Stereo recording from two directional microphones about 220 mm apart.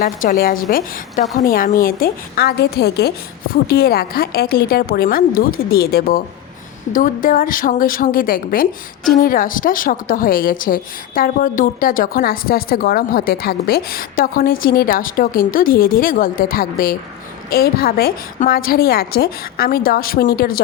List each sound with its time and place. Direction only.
0.0 s a woman's voice: 35° left (ahead or behind)